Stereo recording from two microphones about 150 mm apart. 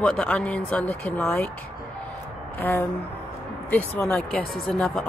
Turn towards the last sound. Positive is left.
turn(degrees=5)  # may be behind; listen again after turning